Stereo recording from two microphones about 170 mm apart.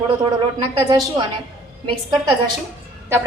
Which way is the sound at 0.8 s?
25° right (ahead or behind).